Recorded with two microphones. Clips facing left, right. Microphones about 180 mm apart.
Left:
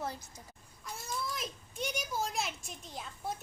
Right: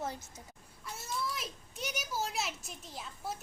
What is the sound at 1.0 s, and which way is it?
A child's voice, 5° right (ahead or behind).